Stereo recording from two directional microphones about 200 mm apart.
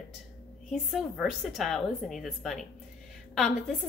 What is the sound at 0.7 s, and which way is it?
A woman's voice, centre (ahead or behind).